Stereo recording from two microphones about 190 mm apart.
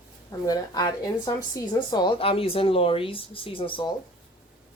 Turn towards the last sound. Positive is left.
turn(degrees=25)  # may be behind; listen again after turning